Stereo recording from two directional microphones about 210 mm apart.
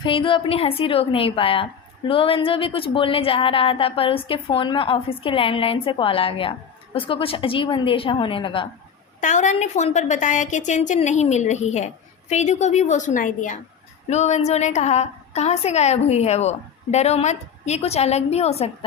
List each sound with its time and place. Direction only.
0.0 s a woman's voice: 25° left (ahead or behind)
9.2 s a woman's voice: 35° left (ahead or behind)